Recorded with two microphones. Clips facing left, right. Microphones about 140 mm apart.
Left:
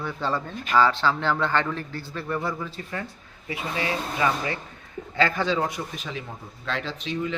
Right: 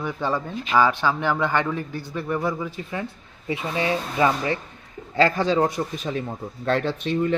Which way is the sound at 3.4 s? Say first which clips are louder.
Right 4 dB; 25° right (ahead or behind).